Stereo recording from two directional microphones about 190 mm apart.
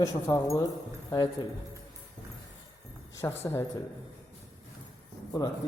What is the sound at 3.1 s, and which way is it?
Speech, 10° left (ahead or behind).